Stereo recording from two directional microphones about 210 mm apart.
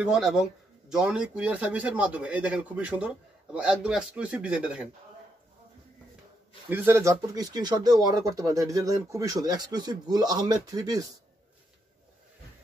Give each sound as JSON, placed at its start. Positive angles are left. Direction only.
{"t": 0.0, "sound": "speech", "side_deg": -5}
{"t": 6.7, "sound": "speech", "side_deg": -10}